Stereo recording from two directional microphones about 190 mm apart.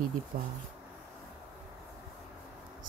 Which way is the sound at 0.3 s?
45° right (ahead or behind).